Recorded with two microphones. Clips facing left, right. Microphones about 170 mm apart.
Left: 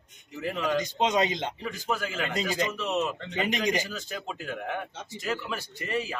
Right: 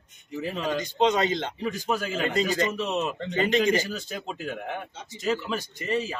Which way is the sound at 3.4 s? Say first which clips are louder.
Right 5 dB; 15° left (ahead or behind).